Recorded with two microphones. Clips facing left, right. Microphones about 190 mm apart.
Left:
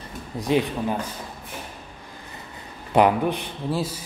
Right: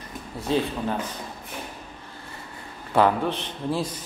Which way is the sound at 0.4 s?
15° left (ahead or behind).